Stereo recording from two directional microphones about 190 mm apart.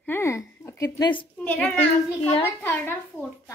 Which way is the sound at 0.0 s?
10° left (ahead or behind).